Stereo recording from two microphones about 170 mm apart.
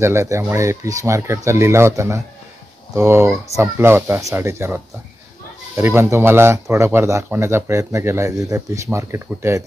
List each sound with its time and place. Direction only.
0.0 s speech: 15° right (ahead or behind)